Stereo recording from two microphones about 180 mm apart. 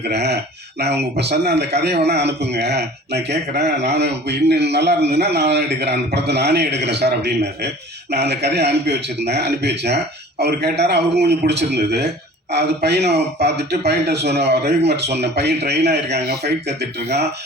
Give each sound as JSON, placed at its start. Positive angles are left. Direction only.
{"t": 0.1, "sound": "speech", "side_deg": -65}